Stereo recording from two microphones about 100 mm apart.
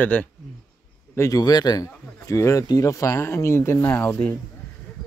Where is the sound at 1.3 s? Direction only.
45° left (ahead or behind).